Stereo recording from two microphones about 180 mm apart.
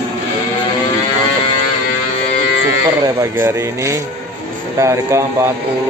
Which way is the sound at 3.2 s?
15° right (ahead or behind).